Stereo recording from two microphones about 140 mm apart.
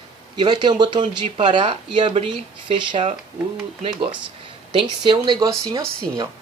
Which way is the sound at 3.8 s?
40° right (ahead or behind).